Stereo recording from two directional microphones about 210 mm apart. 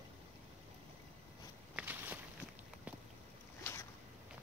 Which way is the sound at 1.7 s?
10° right (ahead or behind).